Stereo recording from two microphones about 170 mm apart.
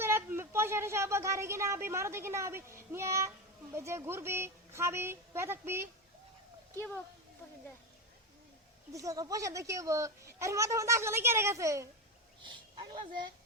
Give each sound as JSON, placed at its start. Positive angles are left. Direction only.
{"t": 0.0, "sound": "speech", "side_deg": -15}
{"t": 6.7, "sound": "speech", "side_deg": 15}
{"t": 8.9, "sound": "a child's voice", "side_deg": -20}